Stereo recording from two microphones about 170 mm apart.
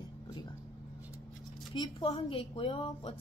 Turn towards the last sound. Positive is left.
turn(degrees=30)  # may be behind; listen again after turning